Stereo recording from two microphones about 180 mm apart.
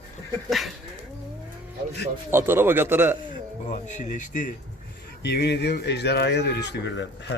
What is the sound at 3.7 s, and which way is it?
Speech, 45° left (ahead or behind).